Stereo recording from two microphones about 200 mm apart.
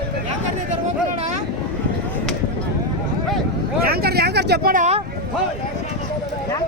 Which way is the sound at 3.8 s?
50° right (ahead or behind).